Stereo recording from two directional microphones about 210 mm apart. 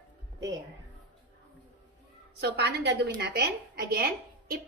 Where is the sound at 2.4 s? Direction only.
55° right (ahead or behind).